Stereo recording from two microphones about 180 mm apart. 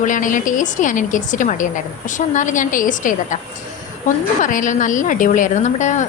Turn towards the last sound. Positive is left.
turn(degrees=40)  # may be behind; listen again after turning